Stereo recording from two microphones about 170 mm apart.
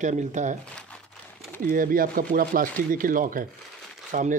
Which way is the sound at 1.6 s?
55° right (ahead or behind).